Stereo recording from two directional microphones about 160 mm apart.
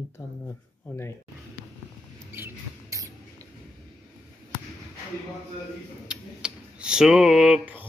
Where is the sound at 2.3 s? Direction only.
15° right (ahead or behind).